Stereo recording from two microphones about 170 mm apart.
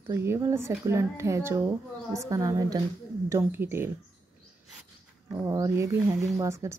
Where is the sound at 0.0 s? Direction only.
15° right (ahead or behind).